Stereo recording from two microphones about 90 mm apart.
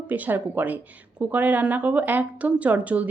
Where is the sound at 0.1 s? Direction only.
20° right (ahead or behind).